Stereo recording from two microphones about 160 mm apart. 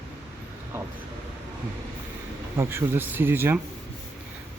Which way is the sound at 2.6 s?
15° right (ahead or behind).